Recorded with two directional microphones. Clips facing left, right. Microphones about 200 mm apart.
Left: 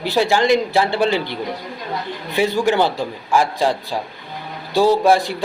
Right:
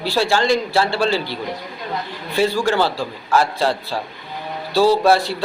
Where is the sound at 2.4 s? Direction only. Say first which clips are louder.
Left 1 dB; 15° left (ahead or behind).